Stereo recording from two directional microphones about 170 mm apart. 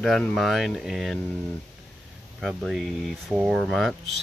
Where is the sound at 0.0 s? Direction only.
Centre (ahead or behind).